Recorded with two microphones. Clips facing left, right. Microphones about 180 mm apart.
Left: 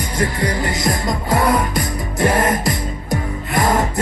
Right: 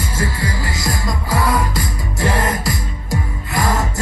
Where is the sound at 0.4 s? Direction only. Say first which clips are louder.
Left 4 dB; 20° left (ahead or behind).